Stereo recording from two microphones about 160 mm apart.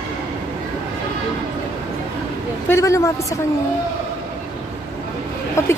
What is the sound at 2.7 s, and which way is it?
Speech, 20° left (ahead or behind).